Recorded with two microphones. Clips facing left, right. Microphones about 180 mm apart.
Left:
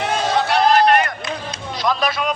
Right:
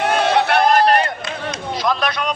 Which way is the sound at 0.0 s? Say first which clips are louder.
Right 3 dB; 65° right (ahead or behind).